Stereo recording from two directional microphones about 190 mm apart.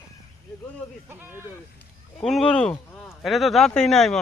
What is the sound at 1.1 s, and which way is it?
Speech, 10° right (ahead or behind).